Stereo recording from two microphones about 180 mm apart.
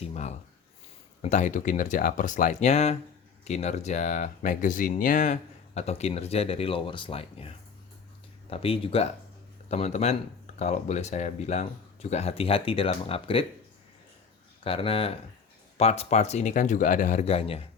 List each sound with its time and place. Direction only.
0.0 s speech: 40° left (ahead or behind)
14.6 s speech: 30° left (ahead or behind)